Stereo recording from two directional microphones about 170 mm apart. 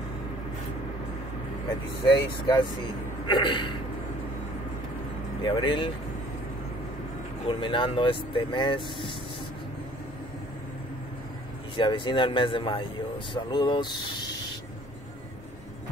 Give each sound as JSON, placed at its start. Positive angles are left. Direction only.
{"t": 2.2, "sound": "speech", "side_deg": 30}
{"t": 5.4, "sound": "speech", "side_deg": 30}
{"t": 7.4, "sound": "speech", "side_deg": 30}
{"t": 11.7, "sound": "speech", "side_deg": 30}